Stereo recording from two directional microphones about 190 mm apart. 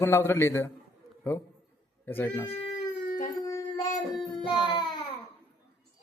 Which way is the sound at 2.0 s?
10° left (ahead or behind).